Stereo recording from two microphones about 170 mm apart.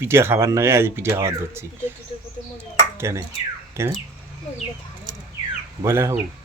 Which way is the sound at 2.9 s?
15° right (ahead or behind).